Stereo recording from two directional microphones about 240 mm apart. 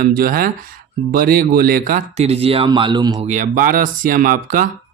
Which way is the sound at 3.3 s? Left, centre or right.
Right.